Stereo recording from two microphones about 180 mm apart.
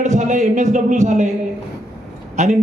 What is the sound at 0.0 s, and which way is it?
A man's voice, 40° right (ahead or behind).